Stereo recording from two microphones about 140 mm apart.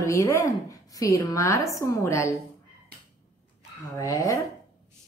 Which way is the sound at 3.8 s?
25° left (ahead or behind).